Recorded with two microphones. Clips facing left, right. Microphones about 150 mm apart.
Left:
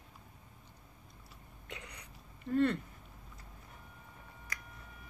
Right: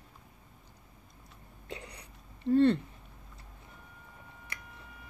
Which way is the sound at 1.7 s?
30° right (ahead or behind).